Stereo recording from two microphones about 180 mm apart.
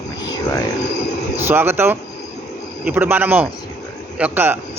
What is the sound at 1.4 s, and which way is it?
A man's voice, 10° right (ahead or behind).